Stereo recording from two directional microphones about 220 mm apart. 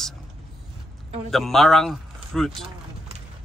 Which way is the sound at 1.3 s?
Centre (ahead or behind).